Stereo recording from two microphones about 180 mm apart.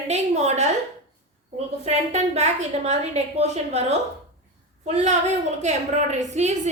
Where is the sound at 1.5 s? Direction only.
35° right (ahead or behind).